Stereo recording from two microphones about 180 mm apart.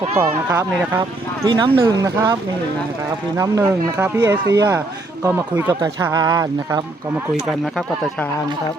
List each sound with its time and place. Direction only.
0.2 s speech: 10° right (ahead or behind)
1.5 s speech: 30° right (ahead or behind)
7.6 s speech: centre (ahead or behind)